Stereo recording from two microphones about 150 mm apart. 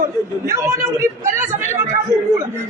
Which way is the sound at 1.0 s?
15° right (ahead or behind).